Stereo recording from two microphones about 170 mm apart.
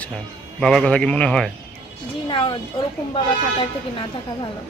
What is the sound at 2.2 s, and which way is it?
Speech, 25° left (ahead or behind).